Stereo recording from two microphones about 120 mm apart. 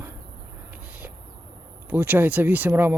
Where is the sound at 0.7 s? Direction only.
15° right (ahead or behind).